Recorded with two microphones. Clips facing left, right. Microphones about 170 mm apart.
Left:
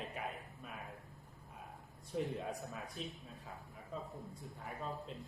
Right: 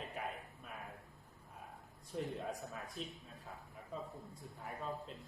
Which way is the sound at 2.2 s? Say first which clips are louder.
Left 2 dB; centre (ahead or behind).